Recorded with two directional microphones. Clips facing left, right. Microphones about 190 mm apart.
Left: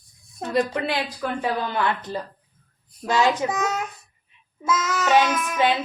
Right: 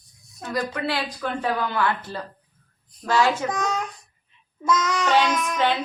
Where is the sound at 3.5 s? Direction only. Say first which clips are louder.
Left 1 dB; 5° left (ahead or behind).